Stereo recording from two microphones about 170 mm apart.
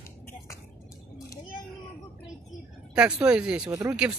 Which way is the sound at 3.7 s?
20° right (ahead or behind).